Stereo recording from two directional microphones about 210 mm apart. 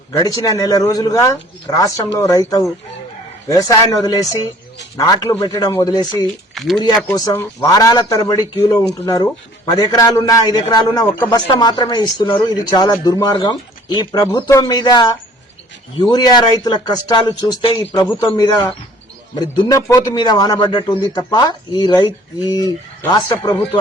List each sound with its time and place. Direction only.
0.1 s a man's voice: 15° left (ahead or behind)
3.5 s a man's voice: 20° left (ahead or behind)
6.2 s speech: centre (ahead or behind)
6.8 s a man's voice: 15° left (ahead or behind)